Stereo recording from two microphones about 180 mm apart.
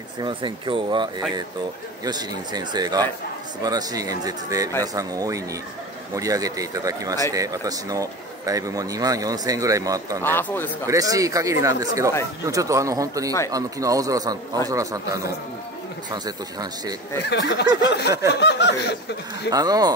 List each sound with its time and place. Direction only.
0.2 s speech: 25° right (ahead or behind)
10.2 s speech: 10° left (ahead or behind)
10.9 s speech: 20° right (ahead or behind)
17.3 s a sound: 70° left (ahead or behind)
19.5 s speech: 20° right (ahead or behind)